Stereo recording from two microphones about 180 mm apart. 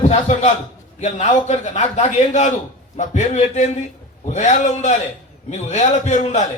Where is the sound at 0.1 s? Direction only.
40° left (ahead or behind).